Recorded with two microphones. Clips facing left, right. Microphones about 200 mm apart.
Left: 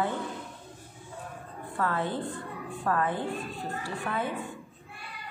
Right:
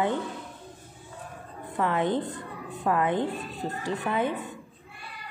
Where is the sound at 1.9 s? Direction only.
20° right (ahead or behind).